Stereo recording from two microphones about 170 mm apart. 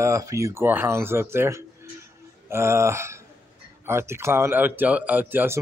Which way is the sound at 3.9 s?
15° right (ahead or behind).